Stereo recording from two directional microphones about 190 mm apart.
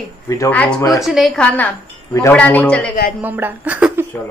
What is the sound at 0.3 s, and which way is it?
A woman's voice, 15° left (ahead or behind).